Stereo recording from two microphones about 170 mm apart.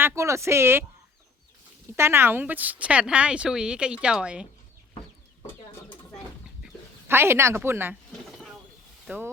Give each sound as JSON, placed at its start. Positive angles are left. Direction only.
{"t": 0.0, "sound": "speech", "side_deg": -15}
{"t": 2.0, "sound": "speech", "side_deg": -15}
{"t": 7.1, "sound": "speech", "side_deg": -15}
{"t": 8.1, "sound": "a sound", "side_deg": 0}
{"t": 9.0, "sound": "speech", "side_deg": -10}